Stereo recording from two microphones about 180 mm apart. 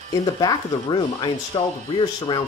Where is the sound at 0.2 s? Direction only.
20° left (ahead or behind).